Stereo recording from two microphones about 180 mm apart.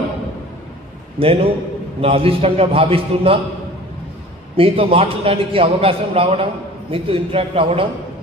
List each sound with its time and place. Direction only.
1.2 s a man's voice: 30° right (ahead or behind)
4.6 s a man's voice: 30° right (ahead or behind)